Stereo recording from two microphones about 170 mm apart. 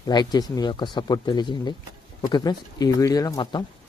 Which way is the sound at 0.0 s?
25° left (ahead or behind).